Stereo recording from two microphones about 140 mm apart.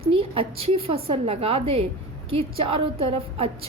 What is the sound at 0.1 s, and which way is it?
A woman's voice, 40° right (ahead or behind).